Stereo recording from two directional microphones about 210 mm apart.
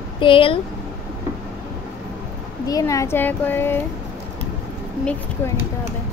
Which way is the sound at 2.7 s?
15° left (ahead or behind).